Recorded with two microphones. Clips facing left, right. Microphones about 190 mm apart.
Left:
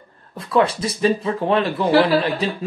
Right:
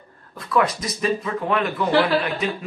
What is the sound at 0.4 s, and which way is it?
A man's voice, 30° left (ahead or behind).